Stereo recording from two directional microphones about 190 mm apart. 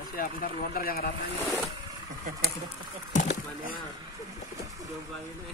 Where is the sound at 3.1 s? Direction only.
40° left (ahead or behind).